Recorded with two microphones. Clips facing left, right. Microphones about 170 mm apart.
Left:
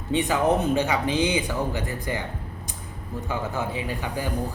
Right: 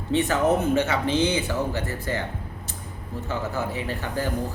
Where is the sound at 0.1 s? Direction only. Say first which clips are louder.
Right 1 dB; 15° left (ahead or behind).